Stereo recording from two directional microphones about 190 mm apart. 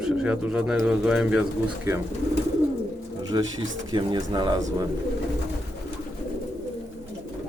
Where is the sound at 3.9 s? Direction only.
25° right (ahead or behind).